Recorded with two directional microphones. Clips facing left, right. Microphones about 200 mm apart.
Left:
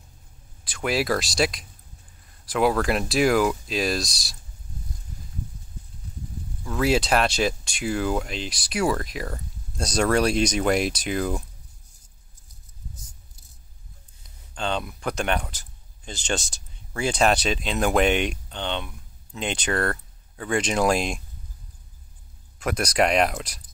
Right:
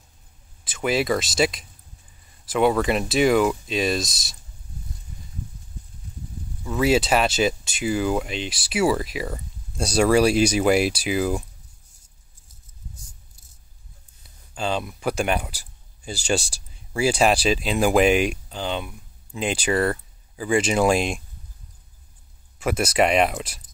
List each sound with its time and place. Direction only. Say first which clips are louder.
0.7 s speech: right 2 dB; centre (ahead or behind)
6.6 s speech: right 2 dB; centre (ahead or behind)
14.5 s speech: right 2 dB; 5° right (ahead or behind)
22.6 s speech: right 2 dB; 5° right (ahead or behind)